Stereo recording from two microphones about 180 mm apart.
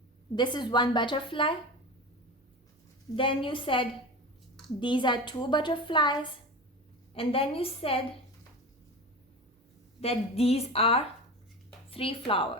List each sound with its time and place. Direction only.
0.3 s a woman's voice: 25° left (ahead or behind)
3.2 s a woman's voice: 30° left (ahead or behind)
10.0 s a woman's voice: 35° left (ahead or behind)